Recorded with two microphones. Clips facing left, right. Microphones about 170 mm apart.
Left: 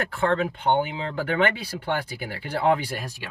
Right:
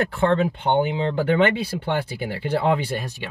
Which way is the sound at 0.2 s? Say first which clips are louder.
Right 2 dB; 30° right (ahead or behind).